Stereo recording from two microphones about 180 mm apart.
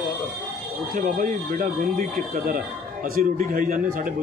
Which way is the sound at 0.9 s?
50° right (ahead or behind).